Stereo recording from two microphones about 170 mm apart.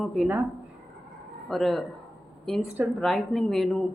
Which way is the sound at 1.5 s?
Centre (ahead or behind).